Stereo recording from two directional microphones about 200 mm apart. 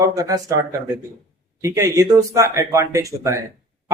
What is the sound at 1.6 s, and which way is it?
Speech, 15° right (ahead or behind).